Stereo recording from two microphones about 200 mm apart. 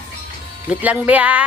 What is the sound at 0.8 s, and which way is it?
Speech, 10° right (ahead or behind).